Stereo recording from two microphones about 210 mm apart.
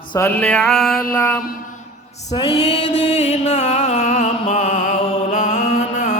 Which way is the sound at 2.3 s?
20° left (ahead or behind).